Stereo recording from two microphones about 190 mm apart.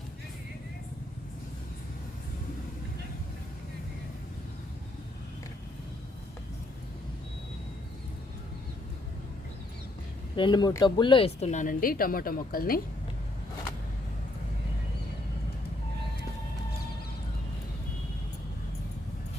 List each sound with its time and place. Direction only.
10.3 s speech: 25° left (ahead or behind); by 12.8 s 50° left (ahead or behind)